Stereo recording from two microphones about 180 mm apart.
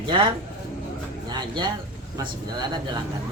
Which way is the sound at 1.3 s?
25° right (ahead or behind).